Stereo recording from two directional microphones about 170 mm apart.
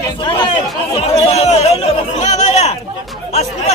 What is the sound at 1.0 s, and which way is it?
Speech, 35° left (ahead or behind).